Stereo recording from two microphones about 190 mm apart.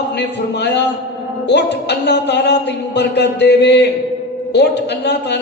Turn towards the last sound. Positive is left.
turn(degrees=65)  # may be behind; listen again after turning